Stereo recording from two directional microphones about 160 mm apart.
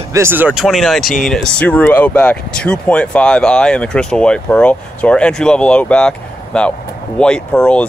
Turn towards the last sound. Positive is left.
turn(degrees=5)  # may be behind; listen again after turning